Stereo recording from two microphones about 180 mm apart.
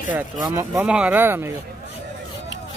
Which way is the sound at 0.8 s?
5° right (ahead or behind).